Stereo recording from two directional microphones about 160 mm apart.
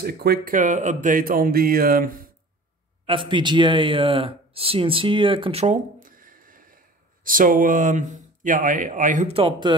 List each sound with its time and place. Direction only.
0.0 s speech: 75° right (ahead or behind)
0.6 s speech: 50° right (ahead or behind)
3.1 s speech: 30° right (ahead or behind)
5.9 s a sound: 60° right (ahead or behind)
7.2 s speech: 60° right (ahead or behind)
9.3 s speech: 35° right (ahead or behind)